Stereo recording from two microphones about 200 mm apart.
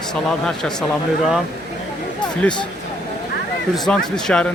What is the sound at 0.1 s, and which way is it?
Speech, 5° left (ahead or behind).